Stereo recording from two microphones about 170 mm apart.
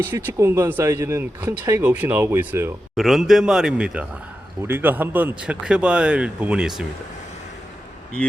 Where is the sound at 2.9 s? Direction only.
Centre (ahead or behind).